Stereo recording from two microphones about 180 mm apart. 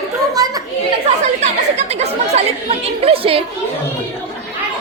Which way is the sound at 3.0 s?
30° right (ahead or behind).